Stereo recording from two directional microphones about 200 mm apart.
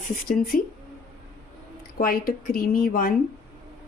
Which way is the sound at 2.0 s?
45° left (ahead or behind).